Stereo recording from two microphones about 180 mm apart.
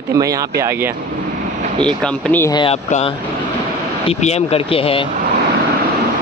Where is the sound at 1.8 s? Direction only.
10° left (ahead or behind).